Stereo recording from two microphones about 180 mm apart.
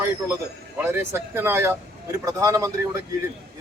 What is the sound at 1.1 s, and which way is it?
A man's voice, 10° right (ahead or behind).